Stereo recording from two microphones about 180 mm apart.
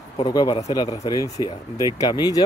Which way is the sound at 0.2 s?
20° left (ahead or behind).